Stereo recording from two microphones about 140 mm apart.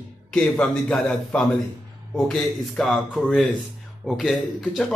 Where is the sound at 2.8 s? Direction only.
5° left (ahead or behind).